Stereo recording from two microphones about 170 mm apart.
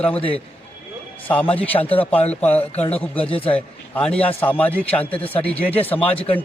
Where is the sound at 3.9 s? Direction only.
10° left (ahead or behind).